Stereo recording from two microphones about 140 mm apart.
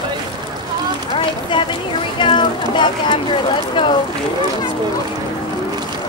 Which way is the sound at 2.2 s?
35° left (ahead or behind).